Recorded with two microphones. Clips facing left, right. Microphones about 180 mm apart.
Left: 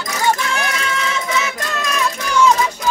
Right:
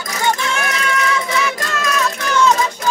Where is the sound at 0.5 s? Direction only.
30° left (ahead or behind).